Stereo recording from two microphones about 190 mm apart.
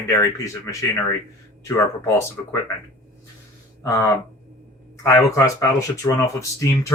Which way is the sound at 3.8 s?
15° left (ahead or behind).